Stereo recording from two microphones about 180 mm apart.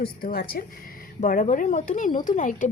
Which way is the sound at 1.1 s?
45° left (ahead or behind).